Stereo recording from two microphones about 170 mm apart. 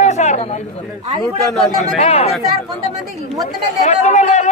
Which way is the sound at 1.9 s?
35° left (ahead or behind).